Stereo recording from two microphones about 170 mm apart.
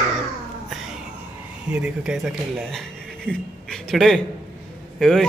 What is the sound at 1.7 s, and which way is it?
A man's voice, 5° right (ahead or behind).